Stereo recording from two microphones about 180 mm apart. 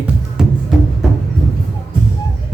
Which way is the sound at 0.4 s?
5° right (ahead or behind).